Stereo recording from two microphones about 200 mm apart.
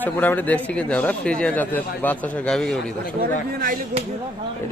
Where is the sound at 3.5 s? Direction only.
45° right (ahead or behind).